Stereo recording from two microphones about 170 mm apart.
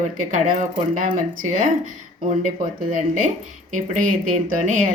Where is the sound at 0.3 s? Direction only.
50° right (ahead or behind).